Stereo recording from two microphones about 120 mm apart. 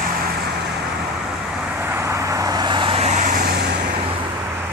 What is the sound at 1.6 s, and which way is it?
Vehicle, 15° right (ahead or behind).